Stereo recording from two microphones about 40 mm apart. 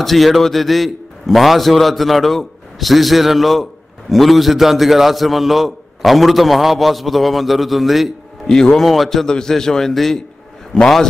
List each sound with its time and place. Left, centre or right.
0.0 s a man's voice: centre
8.5 s a man's voice: centre
8.8 s a man's voice: centre
9.2 s a man's voice: centre
10.7 s a man's voice: left